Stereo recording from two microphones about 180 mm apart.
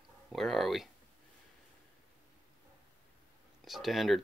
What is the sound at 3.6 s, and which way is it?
Speech, centre (ahead or behind).